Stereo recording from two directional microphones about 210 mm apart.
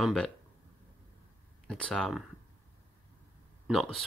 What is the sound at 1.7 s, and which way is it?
Speech, 5° left (ahead or behind).